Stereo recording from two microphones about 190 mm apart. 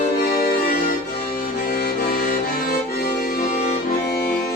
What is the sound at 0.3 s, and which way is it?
Music, 50° left (ahead or behind).